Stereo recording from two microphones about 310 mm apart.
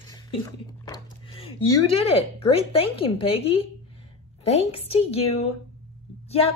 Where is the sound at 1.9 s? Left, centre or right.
Centre.